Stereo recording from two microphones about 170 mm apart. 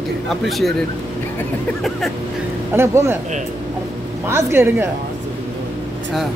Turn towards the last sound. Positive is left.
turn(degrees=-15)  # may be behind; listen again after turning